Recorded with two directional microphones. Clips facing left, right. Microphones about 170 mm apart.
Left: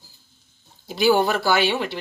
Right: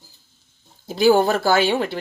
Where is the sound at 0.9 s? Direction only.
45° right (ahead or behind).